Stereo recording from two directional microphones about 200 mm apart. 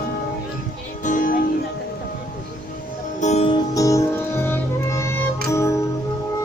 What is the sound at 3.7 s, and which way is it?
Music, 15° left (ahead or behind).